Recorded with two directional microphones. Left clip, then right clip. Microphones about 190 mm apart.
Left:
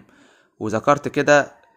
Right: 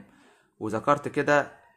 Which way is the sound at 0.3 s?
30° left (ahead or behind).